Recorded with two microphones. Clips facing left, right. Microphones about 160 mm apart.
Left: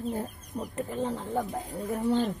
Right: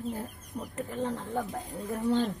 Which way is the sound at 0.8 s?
20° left (ahead or behind).